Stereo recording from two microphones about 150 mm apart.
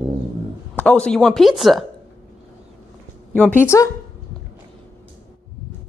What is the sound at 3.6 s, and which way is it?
Speech, 20° left (ahead or behind).